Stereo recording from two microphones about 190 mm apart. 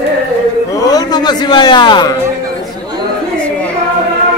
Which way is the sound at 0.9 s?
20° left (ahead or behind).